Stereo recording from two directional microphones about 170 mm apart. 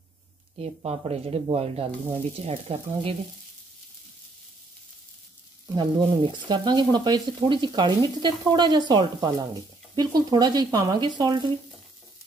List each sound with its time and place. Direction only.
0.6 s speech: 35° right (ahead or behind)
5.8 s frying: 25° right (ahead or behind)